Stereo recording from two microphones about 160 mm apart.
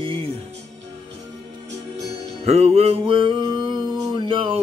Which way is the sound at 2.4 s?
40° right (ahead or behind).